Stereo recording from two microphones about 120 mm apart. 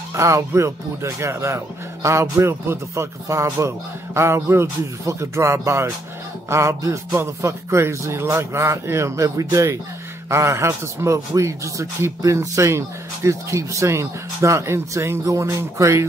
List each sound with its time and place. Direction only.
0.1 s speech: 25° right (ahead or behind)